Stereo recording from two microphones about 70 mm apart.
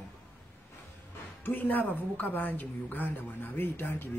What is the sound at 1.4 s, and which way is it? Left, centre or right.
A woman's voice, left.